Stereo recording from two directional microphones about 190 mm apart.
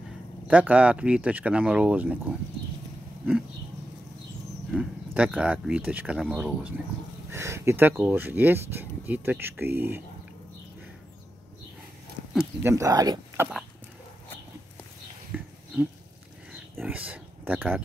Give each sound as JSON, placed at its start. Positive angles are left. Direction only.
{"t": 0.5, "sound": "speech", "side_deg": -5}
{"t": 4.6, "sound": "speech", "side_deg": -5}
{"t": 12.4, "sound": "speech", "side_deg": -15}
{"t": 15.3, "sound": "a sound", "side_deg": -10}
{"t": 16.8, "sound": "speech", "side_deg": -10}